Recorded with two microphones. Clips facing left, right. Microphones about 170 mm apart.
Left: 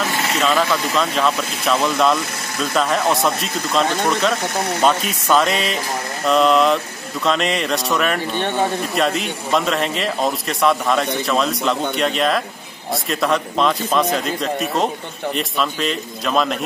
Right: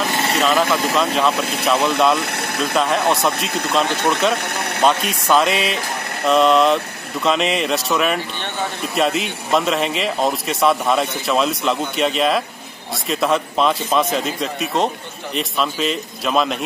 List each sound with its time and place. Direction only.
0.4 s a man's voice: centre (ahead or behind)
2.1 s vehicle: 65° right (ahead or behind)
2.6 s a man's voice: centre (ahead or behind)
3.3 s speech: 65° right (ahead or behind)
4.1 s a man's voice: centre (ahead or behind)
4.4 s speech: 60° right (ahead or behind)
4.8 s a man's voice: centre (ahead or behind)